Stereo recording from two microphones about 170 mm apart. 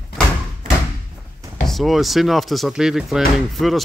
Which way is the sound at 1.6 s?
Centre (ahead or behind).